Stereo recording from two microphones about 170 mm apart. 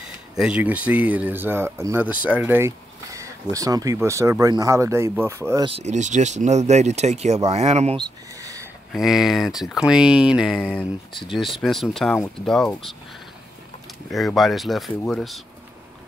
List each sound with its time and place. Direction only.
0.0 s speech: 5° right (ahead or behind)
5.7 s speech: 40° right (ahead or behind)
8.4 s a sound: 20° right (ahead or behind)
8.9 s speech: centre (ahead or behind)
14.1 s speech: centre (ahead or behind)